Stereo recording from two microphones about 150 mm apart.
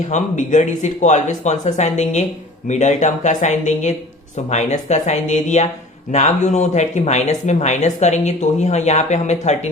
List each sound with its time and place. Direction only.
0.1 s speech: 55° left (ahead or behind)